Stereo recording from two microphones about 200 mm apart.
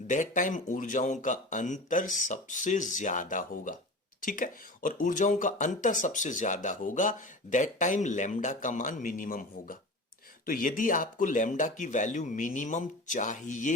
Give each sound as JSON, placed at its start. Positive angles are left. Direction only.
{"t": 0.1, "sound": "speech", "side_deg": 40}